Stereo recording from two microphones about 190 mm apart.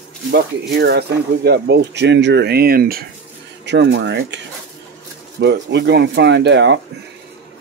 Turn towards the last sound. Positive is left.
turn(degrees=-65)  # may be behind; listen again after turning